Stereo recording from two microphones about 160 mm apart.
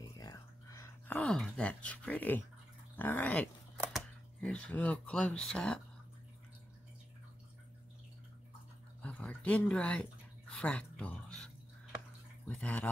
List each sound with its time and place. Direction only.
0.2 s a sound: 20° left (ahead or behind)
1.1 s speech: 5° left (ahead or behind)
9.0 s speech: 10° left (ahead or behind)